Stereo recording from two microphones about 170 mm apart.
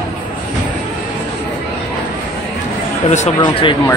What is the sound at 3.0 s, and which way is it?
Speech, 40° left (ahead or behind).